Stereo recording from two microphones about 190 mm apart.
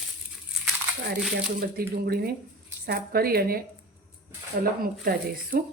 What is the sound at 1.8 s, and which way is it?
A woman's voice, 50° right (ahead or behind).